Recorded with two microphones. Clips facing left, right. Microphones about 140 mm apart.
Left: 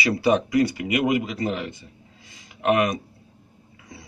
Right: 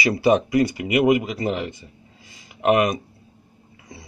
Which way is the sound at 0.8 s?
20° right (ahead or behind).